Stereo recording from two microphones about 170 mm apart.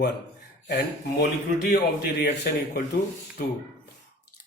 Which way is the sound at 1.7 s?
70° left (ahead or behind).